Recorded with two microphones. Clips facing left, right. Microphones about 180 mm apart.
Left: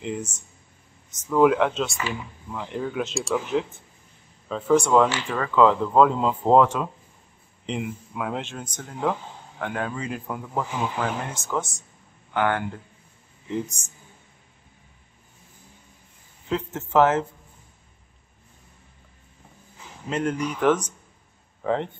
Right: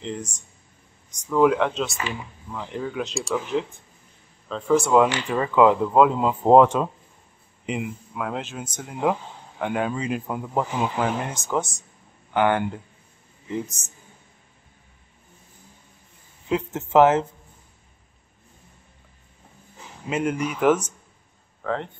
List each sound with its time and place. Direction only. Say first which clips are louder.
0.0 s speech: left 1 dB; 5° left (ahead or behind)
6.4 s speech: right 4 dB; 20° right (ahead or behind)
7.6 s speech: right 1 dB; centre (ahead or behind); by 12.6 s 20° right (ahead or behind)
13.5 s speech: even; centre (ahead or behind)
16.4 s speech: right 2 dB; 15° right (ahead or behind)
20.1 s speech: right 1 dB; 10° right (ahead or behind)
21.6 s speech: left 3 dB; 15° left (ahead or behind)